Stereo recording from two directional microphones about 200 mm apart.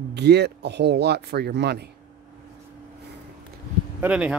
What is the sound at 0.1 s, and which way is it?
Speech, 55° right (ahead or behind).